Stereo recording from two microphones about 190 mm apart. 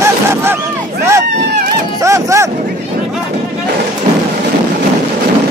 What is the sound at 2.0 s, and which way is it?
Cattle, 15° right (ahead or behind).